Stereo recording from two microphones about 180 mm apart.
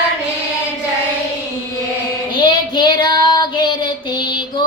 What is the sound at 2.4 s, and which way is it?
Child singing, 25° left (ahead or behind).